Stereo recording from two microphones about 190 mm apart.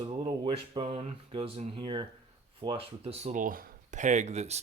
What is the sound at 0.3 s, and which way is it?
Speech, 25° right (ahead or behind).